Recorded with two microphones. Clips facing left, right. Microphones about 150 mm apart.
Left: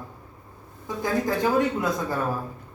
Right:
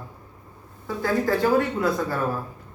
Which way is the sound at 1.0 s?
20° left (ahead or behind).